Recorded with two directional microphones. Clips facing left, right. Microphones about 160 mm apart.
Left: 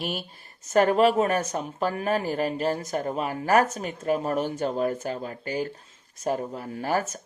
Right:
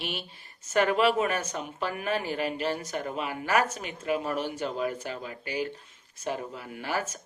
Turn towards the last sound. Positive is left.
turn(degrees=35)  # may be behind; listen again after turning